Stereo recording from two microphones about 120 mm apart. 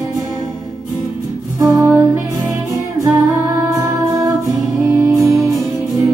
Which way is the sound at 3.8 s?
25° right (ahead or behind).